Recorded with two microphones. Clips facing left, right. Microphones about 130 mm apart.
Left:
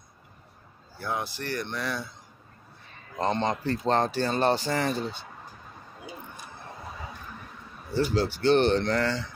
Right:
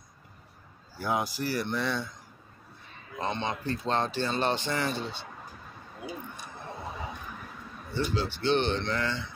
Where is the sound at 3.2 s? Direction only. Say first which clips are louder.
Left 5 dB; 45° left (ahead or behind).